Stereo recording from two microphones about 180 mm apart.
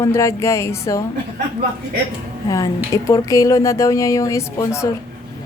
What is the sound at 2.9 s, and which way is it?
Speech, 15° left (ahead or behind).